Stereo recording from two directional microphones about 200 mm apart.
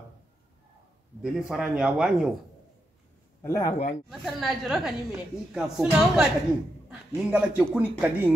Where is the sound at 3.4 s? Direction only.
15° left (ahead or behind).